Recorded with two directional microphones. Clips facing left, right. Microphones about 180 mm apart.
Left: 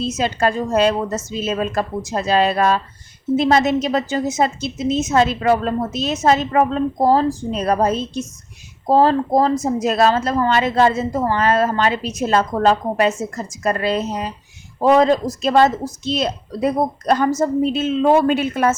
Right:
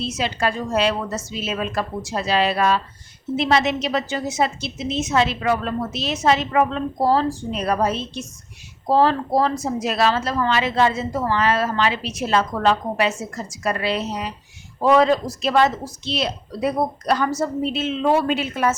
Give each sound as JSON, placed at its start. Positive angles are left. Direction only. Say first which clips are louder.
{"t": 0.2, "sound": "a woman's voice", "louder": "left 4 dB", "side_deg": 45}